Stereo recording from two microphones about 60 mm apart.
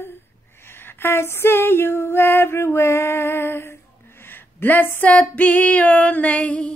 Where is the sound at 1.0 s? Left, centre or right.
Left.